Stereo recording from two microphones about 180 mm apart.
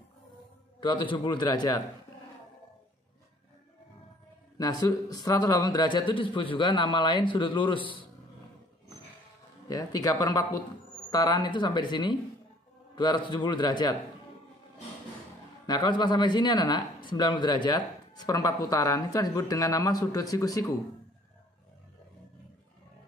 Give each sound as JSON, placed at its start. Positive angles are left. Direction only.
{"t": 0.7, "sound": "speech", "side_deg": 25}
{"t": 4.6, "sound": "speech", "side_deg": 20}
{"t": 9.7, "sound": "speech", "side_deg": 20}
{"t": 15.6, "sound": "speech", "side_deg": 25}